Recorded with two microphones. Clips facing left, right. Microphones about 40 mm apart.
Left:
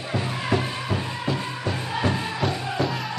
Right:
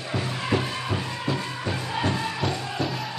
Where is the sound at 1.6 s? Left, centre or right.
Centre.